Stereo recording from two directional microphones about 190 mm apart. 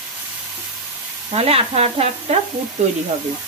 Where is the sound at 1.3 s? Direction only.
30° right (ahead or behind).